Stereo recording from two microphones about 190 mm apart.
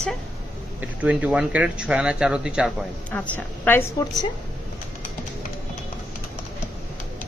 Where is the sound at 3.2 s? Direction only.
10° left (ahead or behind).